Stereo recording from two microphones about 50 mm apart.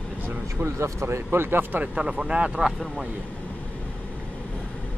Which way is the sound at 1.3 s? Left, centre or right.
Right.